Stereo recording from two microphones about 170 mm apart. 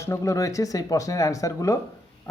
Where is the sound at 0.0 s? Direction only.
15° left (ahead or behind).